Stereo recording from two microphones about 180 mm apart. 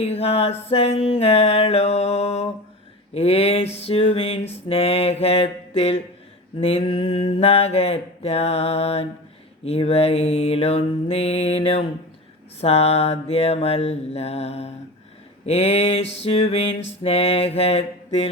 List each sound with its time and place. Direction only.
0.0 s mantra: 35° left (ahead or behind)